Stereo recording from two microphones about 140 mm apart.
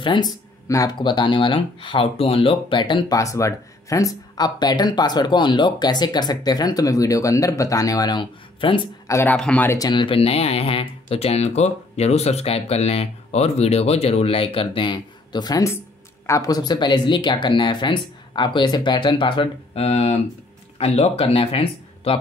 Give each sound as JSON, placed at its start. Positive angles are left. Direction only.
{"t": 0.0, "sound": "speech", "side_deg": 35}
{"t": 3.2, "sound": "speech", "side_deg": 20}
{"t": 9.0, "sound": "speech", "side_deg": 15}
{"t": 9.7, "sound": "speech", "side_deg": 30}